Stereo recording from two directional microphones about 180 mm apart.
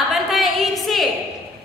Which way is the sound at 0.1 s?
Centre (ahead or behind).